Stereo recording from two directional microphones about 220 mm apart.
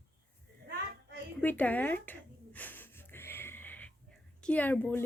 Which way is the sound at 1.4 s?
10° left (ahead or behind).